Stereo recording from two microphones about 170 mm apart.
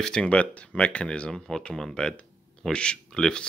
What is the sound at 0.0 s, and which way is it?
Speech, 5° left (ahead or behind).